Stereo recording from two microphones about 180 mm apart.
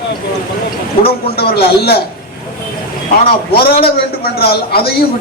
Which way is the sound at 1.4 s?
60° left (ahead or behind).